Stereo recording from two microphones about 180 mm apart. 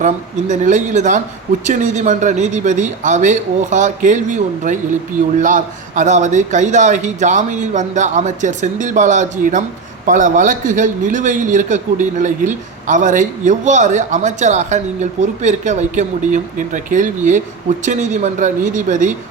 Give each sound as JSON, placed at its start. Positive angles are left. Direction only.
{"t": 0.0, "sound": "a man's voice", "side_deg": -45}